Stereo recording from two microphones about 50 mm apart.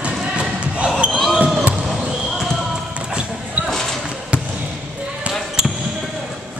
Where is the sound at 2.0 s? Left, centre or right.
Centre.